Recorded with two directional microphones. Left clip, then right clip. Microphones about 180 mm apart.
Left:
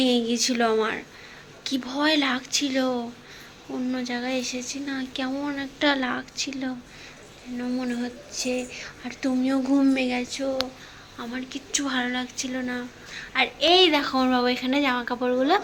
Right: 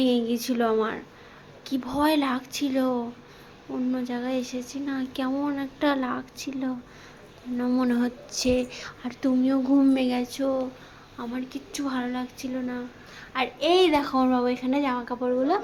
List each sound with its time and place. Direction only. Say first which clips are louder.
0.0 s speech: left 2 dB; 5° right (ahead or behind)
7.6 s speech: right 4 dB; 30° right (ahead or behind)
11.2 s speech: even; 10° right (ahead or behind)